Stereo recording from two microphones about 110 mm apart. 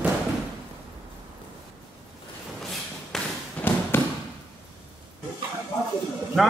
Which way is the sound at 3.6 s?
15° left (ahead or behind).